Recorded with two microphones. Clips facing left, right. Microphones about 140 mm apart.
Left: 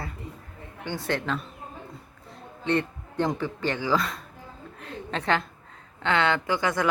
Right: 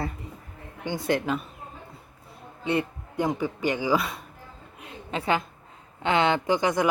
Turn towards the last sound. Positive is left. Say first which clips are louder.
# right 3 dB
turn(degrees=-15)  # may be behind; listen again after turning